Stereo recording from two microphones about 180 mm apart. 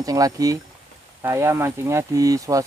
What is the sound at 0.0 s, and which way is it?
Speech, 20° right (ahead or behind).